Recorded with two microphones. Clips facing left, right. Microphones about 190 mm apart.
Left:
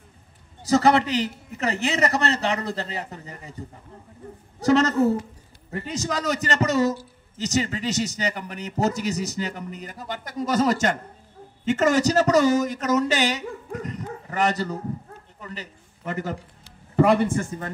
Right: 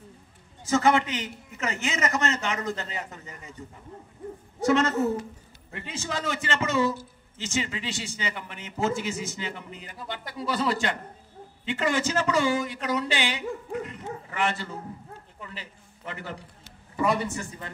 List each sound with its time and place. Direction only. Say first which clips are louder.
0.7 s a man's voice: left 4 dB; 35° left (ahead or behind)
13.8 s dog: left 4 dB; 40° left (ahead or behind)
15.4 s a sound: left 6 dB; 40° left (ahead or behind)
16.9 s speech: left 7 dB; 65° left (ahead or behind)